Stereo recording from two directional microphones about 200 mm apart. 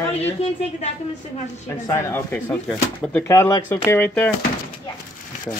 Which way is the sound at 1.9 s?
15° left (ahead or behind).